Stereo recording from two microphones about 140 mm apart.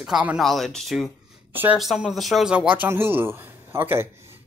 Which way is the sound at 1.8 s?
Centre (ahead or behind).